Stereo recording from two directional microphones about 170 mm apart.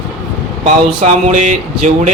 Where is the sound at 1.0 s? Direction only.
40° right (ahead or behind).